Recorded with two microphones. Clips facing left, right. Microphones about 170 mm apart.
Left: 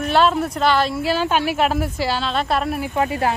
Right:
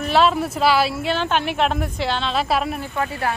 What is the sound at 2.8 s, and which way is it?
Speech, 15° left (ahead or behind).